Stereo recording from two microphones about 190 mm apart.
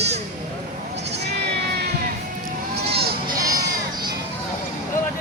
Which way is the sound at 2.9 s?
55° right (ahead or behind).